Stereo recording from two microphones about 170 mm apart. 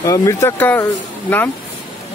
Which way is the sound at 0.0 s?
20° left (ahead or behind).